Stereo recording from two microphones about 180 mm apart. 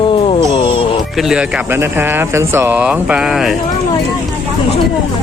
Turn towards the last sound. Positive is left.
turn(degrees=-5)  # may be behind; listen again after turning